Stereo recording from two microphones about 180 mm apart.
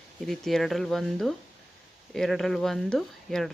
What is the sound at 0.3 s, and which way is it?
Speech, centre (ahead or behind).